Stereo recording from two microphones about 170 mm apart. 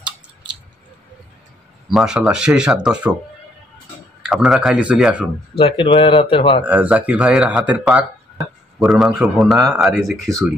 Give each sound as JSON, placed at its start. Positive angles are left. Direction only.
{"t": 1.9, "sound": "speech", "side_deg": -5}
{"t": 4.2, "sound": "speech", "side_deg": 0}
{"t": 5.6, "sound": "speech", "side_deg": 30}
{"t": 6.6, "sound": "speech", "side_deg": -10}